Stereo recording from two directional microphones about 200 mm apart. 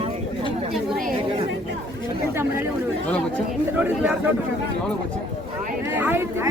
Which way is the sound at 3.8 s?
5° right (ahead or behind).